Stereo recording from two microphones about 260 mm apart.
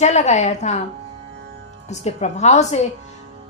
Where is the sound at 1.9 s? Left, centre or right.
Left.